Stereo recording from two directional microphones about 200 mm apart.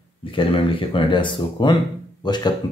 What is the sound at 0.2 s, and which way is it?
Speech, 25° left (ahead or behind).